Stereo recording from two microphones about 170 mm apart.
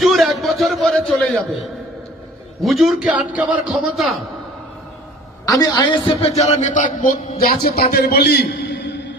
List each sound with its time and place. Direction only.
0.0 s a sound: centre (ahead or behind)
2.6 s a man's voice: centre (ahead or behind)
5.5 s a man's voice: 20° left (ahead or behind); by 9.1 s 85° left